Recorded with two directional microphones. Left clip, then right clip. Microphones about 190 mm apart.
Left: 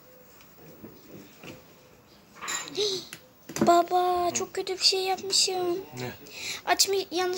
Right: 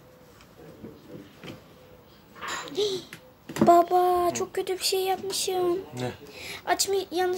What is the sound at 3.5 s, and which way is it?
Speech, 5° right (ahead or behind).